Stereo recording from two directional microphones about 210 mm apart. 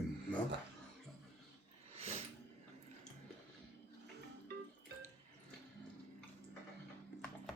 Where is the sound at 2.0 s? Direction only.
30° right (ahead or behind).